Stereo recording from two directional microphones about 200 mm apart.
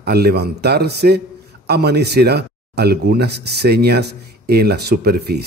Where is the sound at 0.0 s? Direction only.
55° right (ahead or behind).